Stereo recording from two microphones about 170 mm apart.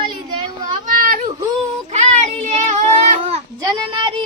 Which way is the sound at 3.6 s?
25° right (ahead or behind).